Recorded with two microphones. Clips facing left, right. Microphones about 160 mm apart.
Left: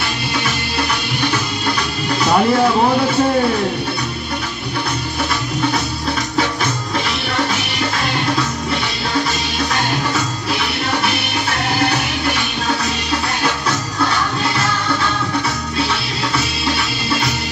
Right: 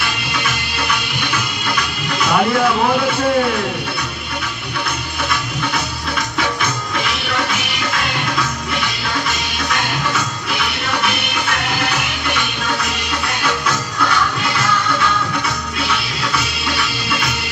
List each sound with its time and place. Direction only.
1.3 s music: 35° left (ahead or behind)
9.7 s music: 35° left (ahead or behind)
15.9 s music: 30° left (ahead or behind)